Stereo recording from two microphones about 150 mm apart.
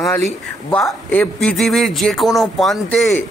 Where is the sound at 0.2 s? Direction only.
5° left (ahead or behind).